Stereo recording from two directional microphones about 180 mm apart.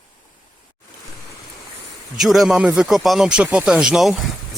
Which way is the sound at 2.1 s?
Centre (ahead or behind).